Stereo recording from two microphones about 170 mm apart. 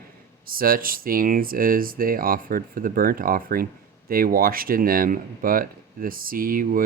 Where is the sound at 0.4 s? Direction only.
60° right (ahead or behind).